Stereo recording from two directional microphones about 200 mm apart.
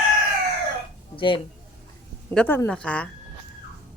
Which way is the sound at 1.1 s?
25° left (ahead or behind).